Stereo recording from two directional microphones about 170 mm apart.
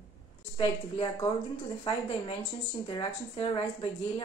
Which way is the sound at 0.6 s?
30° left (ahead or behind).